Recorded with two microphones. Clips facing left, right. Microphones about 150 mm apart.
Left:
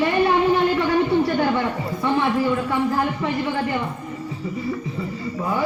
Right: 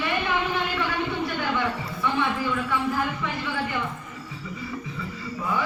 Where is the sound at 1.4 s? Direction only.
35° left (ahead or behind).